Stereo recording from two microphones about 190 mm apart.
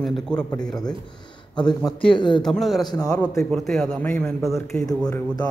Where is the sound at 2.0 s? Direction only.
25° left (ahead or behind).